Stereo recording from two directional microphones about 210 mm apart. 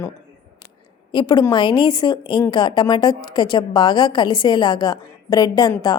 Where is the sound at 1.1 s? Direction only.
20° left (ahead or behind).